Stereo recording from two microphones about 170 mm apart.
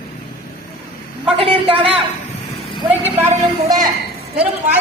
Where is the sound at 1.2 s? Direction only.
30° right (ahead or behind).